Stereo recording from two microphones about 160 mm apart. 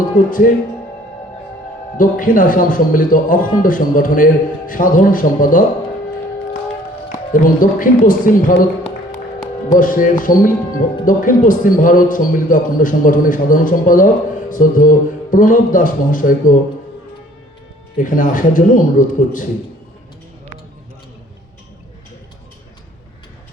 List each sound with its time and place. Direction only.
0.3 s a man's voice: 60° left (ahead or behind)
2.0 s a man's voice: 60° left (ahead or behind)
7.3 s a man's voice: 55° left (ahead or behind)
9.7 s a man's voice: 60° left (ahead or behind)
17.9 s a man's voice: 55° left (ahead or behind)